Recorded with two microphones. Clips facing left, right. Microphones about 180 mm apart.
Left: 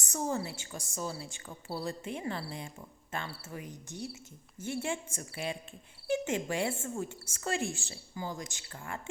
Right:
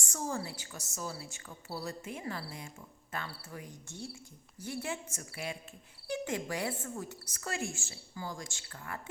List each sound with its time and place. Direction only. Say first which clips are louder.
0.0 s a woman's voice: left 3 dB; 20° left (ahead or behind)
8.1 s a woman's voice: left 3 dB; 20° left (ahead or behind)